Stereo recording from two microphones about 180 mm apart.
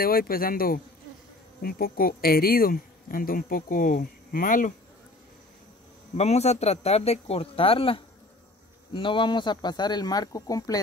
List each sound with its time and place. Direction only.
0.0 s speech: 55° left (ahead or behind)
6.1 s speech: 35° left (ahead or behind); by 10.8 s 20° left (ahead or behind)